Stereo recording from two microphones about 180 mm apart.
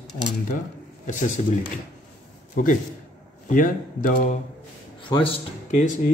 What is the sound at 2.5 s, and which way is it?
A man's voice, 50° left (ahead or behind).